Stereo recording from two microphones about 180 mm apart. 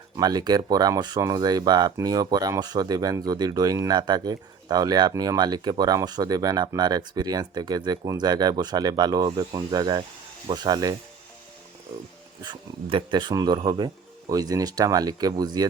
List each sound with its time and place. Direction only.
0.2 s speech: 20° right (ahead or behind)
12.5 s speech: 30° right (ahead or behind)